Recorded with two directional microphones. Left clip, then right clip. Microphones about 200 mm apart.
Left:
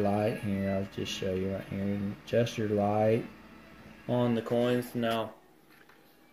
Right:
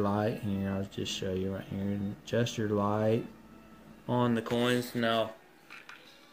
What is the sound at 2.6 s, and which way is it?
Speech, 10° right (ahead or behind).